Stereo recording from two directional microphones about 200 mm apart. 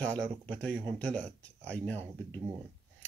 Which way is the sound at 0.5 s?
5° left (ahead or behind).